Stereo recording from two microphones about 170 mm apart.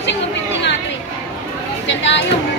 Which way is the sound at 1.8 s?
90° left.